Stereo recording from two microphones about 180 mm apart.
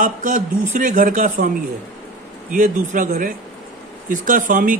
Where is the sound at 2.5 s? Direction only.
45° right (ahead or behind).